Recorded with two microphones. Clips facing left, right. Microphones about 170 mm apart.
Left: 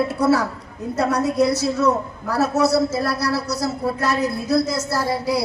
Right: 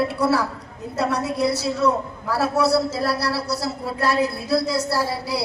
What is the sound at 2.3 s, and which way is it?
A man's voice, 45° left (ahead or behind).